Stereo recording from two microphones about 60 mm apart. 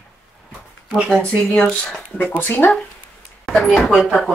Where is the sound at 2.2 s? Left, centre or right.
Left.